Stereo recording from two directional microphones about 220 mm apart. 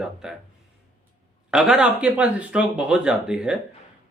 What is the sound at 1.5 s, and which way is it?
Speech, 5° right (ahead or behind).